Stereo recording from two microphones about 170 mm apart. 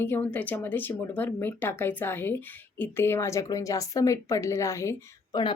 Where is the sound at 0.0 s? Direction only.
10° left (ahead or behind).